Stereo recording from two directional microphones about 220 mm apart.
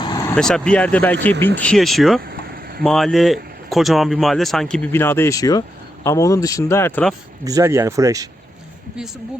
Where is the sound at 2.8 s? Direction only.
5° left (ahead or behind).